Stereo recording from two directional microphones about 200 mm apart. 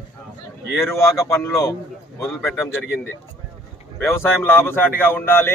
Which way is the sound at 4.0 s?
10° left (ahead or behind).